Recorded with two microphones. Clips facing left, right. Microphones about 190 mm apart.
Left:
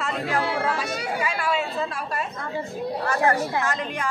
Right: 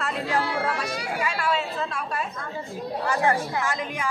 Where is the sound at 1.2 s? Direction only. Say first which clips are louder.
Right 1 dB; 5° left (ahead or behind).